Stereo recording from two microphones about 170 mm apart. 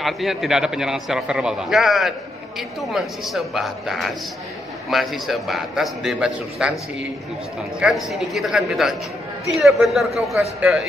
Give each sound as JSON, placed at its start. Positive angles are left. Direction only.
{"t": 0.0, "sound": "a man's voice", "side_deg": 0}
{"t": 7.8, "sound": "a man's voice", "side_deg": 0}